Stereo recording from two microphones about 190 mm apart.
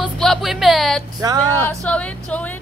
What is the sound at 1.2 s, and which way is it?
Speech, 20° right (ahead or behind).